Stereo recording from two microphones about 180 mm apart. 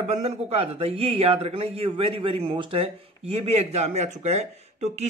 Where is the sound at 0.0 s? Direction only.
40° right (ahead or behind).